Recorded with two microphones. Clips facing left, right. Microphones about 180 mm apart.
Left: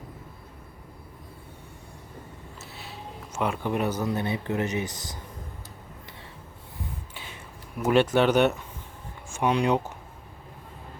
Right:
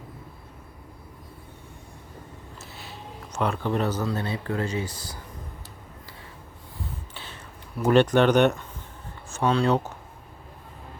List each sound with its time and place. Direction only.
2.6 s speech: centre (ahead or behind); by 5.2 s 20° left (ahead or behind)
7.1 s a sound: 10° left (ahead or behind)
7.9 s speech: 5° left (ahead or behind)